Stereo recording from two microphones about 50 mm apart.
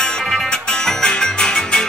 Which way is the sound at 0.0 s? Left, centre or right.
Centre.